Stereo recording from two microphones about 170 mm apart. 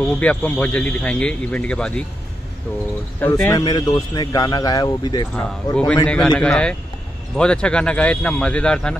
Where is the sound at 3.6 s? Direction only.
25° left (ahead or behind).